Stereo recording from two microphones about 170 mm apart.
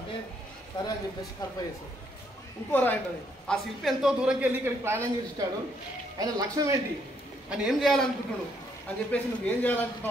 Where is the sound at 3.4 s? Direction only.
Centre (ahead or behind); by 5.1 s 15° right (ahead or behind).